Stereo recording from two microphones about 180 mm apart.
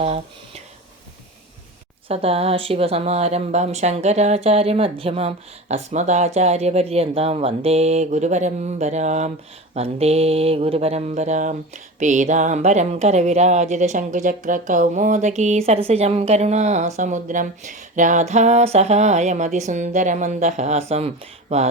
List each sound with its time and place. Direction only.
0.0 s speech: 35° right (ahead or behind)
2.0 s speech: 30° right (ahead or behind)